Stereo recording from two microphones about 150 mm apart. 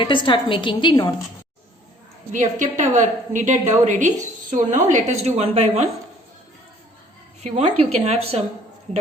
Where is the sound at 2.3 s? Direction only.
55° right (ahead or behind).